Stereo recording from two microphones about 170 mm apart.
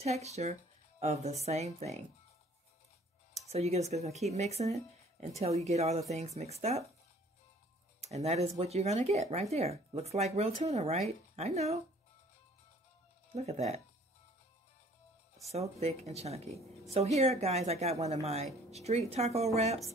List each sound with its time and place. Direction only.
0.0 s speech: 40° right (ahead or behind)
3.4 s speech: 40° right (ahead or behind)
8.0 s speech: 40° right (ahead or behind)
13.3 s speech: 40° right (ahead or behind)
15.5 s speech: 40° right (ahead or behind)